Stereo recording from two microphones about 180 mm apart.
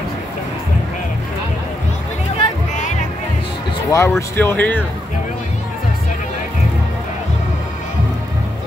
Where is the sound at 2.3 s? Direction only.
45° left (ahead or behind).